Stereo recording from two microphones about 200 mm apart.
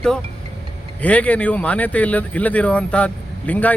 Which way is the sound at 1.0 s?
5° left (ahead or behind).